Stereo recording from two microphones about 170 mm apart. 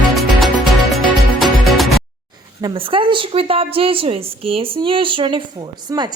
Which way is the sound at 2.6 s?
25° right (ahead or behind).